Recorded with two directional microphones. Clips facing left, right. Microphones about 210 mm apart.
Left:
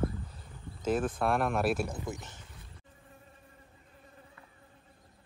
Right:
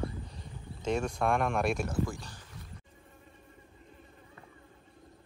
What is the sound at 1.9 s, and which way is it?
Speech, 20° left (ahead or behind).